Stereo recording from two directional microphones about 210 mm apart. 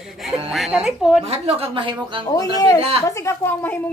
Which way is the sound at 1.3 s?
30° right (ahead or behind).